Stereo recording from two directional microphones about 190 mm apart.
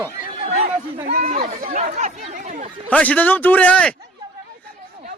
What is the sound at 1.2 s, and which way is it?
Speech, 50° right (ahead or behind).